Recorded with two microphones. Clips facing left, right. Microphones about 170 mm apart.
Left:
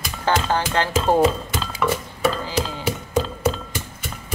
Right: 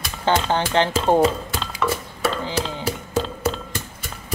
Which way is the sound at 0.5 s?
20° right (ahead or behind).